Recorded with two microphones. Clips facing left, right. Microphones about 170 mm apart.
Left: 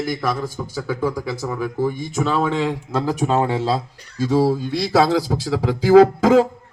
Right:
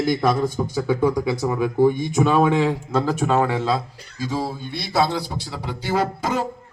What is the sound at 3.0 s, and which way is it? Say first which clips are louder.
Speech: left 2 dB; 15° left (ahead or behind).